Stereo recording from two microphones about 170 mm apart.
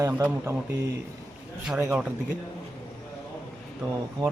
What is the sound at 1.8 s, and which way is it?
Speech, 5° right (ahead or behind).